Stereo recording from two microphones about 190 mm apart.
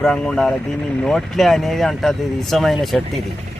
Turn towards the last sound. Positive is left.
turn(degrees=0)  # may be behind; listen again after turning